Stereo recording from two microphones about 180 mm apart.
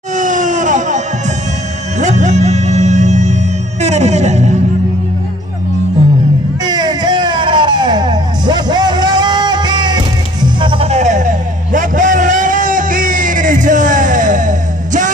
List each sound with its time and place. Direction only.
0.1 s a sound: 45° right (ahead or behind)
2.0 s music: 40° right (ahead or behind)
6.6 s music: 25° right (ahead or behind); by 15.1 s 45° right (ahead or behind)